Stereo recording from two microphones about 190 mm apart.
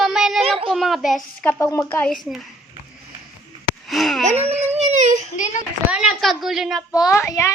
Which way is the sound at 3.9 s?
Centre (ahead or behind).